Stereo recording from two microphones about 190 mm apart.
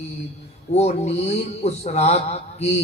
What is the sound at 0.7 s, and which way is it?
Speech, 35° left (ahead or behind).